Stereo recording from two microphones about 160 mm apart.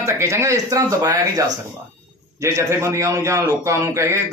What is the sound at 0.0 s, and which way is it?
A man's voice, 20° right (ahead or behind).